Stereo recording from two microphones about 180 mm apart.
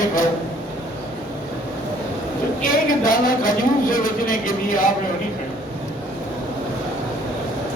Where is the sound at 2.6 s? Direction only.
50° left (ahead or behind).